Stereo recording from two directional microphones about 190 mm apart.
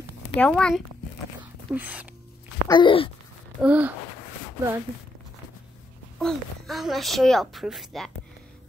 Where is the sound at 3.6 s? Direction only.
5° right (ahead or behind).